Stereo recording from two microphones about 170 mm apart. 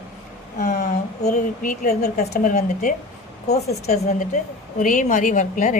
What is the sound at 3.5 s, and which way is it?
A woman's voice, 40° left (ahead or behind).